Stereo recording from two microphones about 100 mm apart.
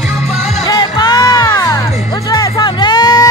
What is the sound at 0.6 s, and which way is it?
Music, 45° left (ahead or behind).